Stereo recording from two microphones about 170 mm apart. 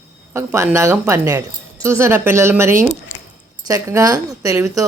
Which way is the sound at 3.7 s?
20° right (ahead or behind).